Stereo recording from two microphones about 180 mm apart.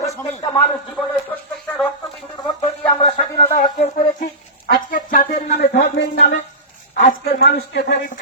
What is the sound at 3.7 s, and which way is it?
A man's voice, 40° left (ahead or behind).